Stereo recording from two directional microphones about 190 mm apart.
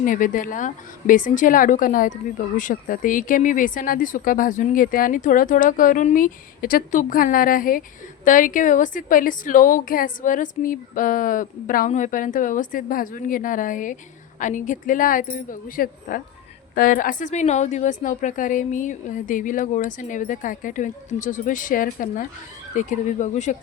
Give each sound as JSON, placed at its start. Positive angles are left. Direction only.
{"t": 0.0, "sound": "speech", "side_deg": 45}